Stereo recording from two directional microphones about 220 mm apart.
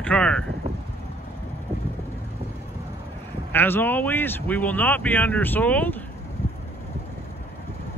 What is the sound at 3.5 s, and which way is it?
Speech, 10° left (ahead or behind).